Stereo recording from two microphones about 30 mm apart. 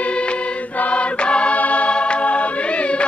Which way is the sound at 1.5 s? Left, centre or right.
Left.